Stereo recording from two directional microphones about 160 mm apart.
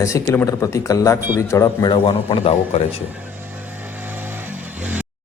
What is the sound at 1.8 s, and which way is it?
Speech, 35° left (ahead or behind).